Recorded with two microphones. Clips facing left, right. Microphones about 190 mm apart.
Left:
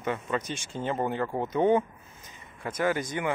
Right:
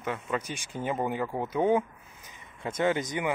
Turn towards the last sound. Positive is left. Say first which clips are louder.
# right 1 dB
turn(degrees=-20)  # may be behind; listen again after turning